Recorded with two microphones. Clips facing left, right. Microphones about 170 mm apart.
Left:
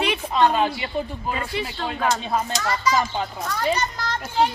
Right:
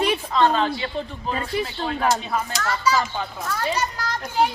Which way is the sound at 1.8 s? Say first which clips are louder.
Even; 25° left (ahead or behind).